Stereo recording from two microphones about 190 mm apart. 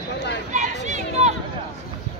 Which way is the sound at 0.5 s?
40° right (ahead or behind).